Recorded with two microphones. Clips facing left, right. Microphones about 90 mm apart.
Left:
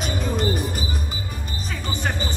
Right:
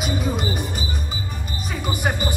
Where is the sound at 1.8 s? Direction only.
15° right (ahead or behind).